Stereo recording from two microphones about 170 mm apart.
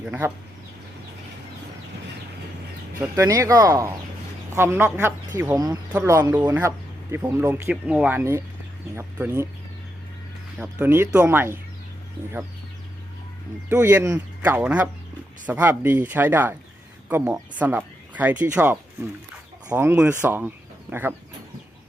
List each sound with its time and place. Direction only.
0.0 s speech: 10° right (ahead or behind)
3.0 s speech: 20° right (ahead or behind)
10.6 s speech: 10° right (ahead or behind)
13.7 s speech: 10° right (ahead or behind)